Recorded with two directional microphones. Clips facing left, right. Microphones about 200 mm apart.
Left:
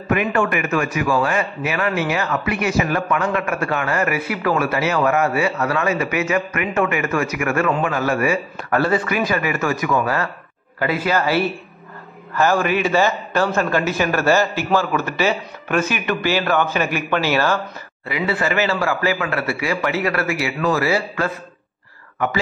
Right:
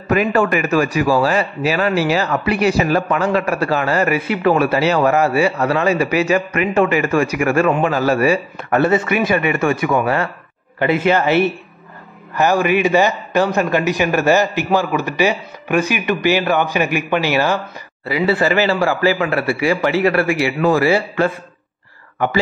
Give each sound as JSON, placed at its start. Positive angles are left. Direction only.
{"t": 0.1, "sound": "a man's voice", "side_deg": -35}
{"t": 18.0, "sound": "a man's voice", "side_deg": -30}